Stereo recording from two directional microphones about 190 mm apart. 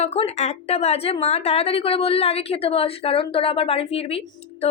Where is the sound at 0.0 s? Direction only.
35° left (ahead or behind).